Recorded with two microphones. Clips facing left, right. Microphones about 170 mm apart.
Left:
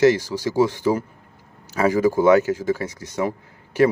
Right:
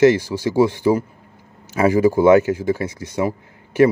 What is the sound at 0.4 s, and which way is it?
Speech, 15° right (ahead or behind).